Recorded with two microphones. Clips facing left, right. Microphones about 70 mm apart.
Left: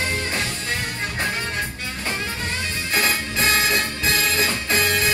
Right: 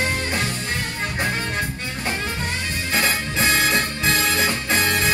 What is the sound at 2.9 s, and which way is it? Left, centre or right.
Music, right.